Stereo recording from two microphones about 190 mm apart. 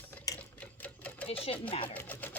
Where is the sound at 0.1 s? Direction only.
10° left (ahead or behind).